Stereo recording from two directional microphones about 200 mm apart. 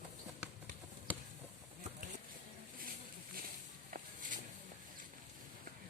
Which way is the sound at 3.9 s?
40° right (ahead or behind).